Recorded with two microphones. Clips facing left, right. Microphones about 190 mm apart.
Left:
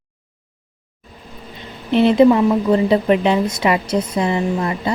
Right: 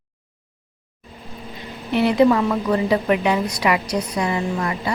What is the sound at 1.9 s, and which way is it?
A woman's voice, 20° left (ahead or behind).